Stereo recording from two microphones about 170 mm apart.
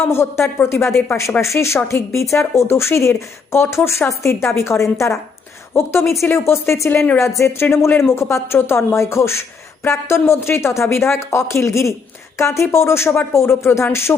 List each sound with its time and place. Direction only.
0.0 s speech: 15° left (ahead or behind)